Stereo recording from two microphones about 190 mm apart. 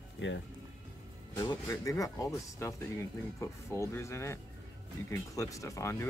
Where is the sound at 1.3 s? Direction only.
20° left (ahead or behind).